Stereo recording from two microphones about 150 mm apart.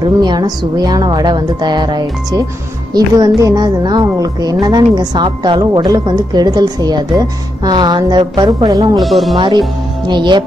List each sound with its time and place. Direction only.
0.2 s a woman's voice: 30° right (ahead or behind)
8.9 s speech: centre (ahead or behind)
10.0 s speech: 30° right (ahead or behind)